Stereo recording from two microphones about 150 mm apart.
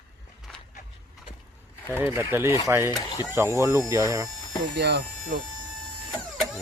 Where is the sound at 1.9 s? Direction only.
15° right (ahead or behind).